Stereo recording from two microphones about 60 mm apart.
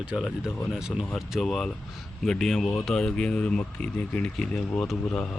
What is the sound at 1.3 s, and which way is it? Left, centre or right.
A man's voice, centre.